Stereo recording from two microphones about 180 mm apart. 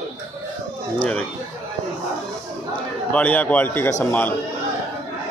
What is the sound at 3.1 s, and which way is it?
Speech, 10° left (ahead or behind).